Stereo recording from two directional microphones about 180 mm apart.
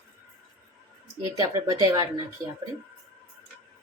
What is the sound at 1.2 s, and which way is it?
Speech, 20° right (ahead or behind).